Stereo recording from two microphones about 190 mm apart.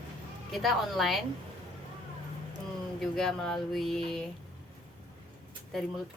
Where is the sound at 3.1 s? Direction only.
Centre (ahead or behind).